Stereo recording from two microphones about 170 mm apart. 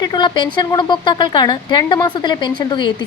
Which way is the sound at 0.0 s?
25° left (ahead or behind).